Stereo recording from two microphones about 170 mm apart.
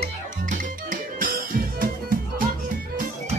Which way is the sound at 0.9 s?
55° right (ahead or behind).